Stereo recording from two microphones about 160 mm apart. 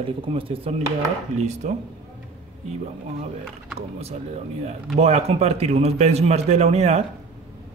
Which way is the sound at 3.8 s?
40° right (ahead or behind).